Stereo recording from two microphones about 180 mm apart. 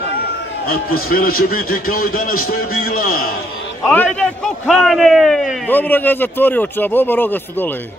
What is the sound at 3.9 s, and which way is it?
A man's voice, 10° left (ahead or behind).